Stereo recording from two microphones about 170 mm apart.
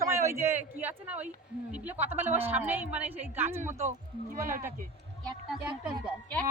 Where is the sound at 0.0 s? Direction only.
15° right (ahead or behind).